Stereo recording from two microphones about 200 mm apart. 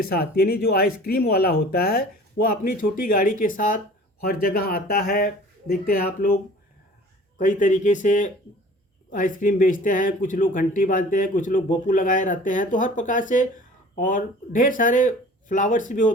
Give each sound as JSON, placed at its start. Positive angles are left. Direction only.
{"t": 0.0, "sound": "speech", "side_deg": 50}
{"t": 7.3, "sound": "speech", "side_deg": 40}